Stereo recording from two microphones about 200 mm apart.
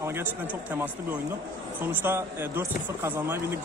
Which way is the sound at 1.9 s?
10° right (ahead or behind).